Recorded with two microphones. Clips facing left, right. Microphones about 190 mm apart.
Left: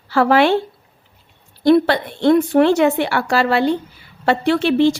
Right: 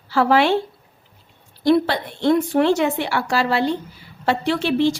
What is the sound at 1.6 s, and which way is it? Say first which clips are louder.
A woman's voice: left 4 dB; 60° left (ahead or behind).